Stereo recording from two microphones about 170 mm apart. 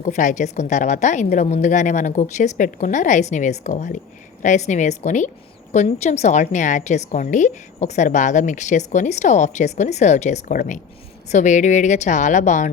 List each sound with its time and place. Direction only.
0.0 s a woman's voice: 45° left (ahead or behind)